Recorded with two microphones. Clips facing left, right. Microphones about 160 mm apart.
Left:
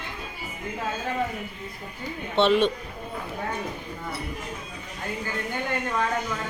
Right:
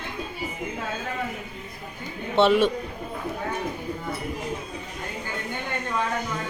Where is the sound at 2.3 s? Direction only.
10° right (ahead or behind).